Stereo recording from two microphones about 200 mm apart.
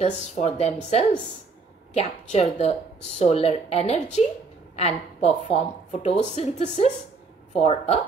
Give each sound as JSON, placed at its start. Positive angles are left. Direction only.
{"t": 0.0, "sound": "speech", "side_deg": 35}